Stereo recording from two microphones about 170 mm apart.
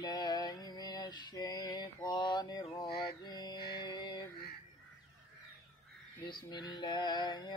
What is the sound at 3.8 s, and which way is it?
Music, 25° left (ahead or behind).